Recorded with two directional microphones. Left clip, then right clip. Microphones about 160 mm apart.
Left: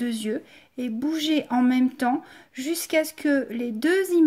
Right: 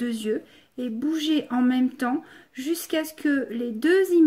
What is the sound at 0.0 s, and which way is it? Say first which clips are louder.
A woman's voice: right 1 dB; 30° left (ahead or behind).